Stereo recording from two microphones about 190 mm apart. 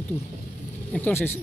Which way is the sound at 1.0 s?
10° left (ahead or behind).